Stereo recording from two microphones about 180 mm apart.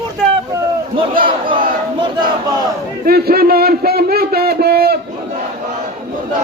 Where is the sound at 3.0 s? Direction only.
60° right (ahead or behind).